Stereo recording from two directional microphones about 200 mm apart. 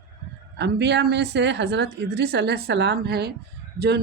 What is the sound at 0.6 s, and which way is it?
A woman's voice, 55° right (ahead or behind).